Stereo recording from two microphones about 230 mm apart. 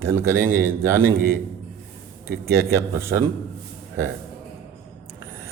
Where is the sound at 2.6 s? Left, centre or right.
Centre.